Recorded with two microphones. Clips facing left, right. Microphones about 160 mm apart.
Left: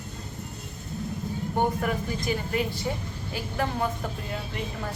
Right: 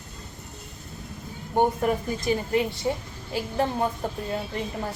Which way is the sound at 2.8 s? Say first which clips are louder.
Right 3 dB; 30° right (ahead or behind).